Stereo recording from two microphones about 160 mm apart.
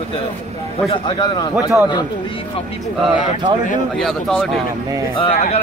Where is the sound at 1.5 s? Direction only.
10° right (ahead or behind).